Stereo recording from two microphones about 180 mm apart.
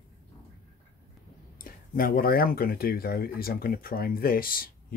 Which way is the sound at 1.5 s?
50° left (ahead or behind).